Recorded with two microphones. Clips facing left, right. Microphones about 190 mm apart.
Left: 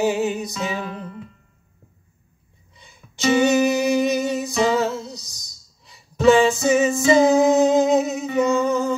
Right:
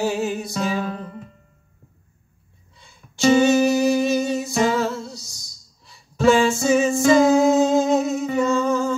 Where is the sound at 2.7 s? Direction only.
15° left (ahead or behind).